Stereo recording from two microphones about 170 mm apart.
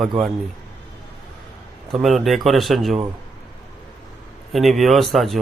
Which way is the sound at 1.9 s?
Centre (ahead or behind).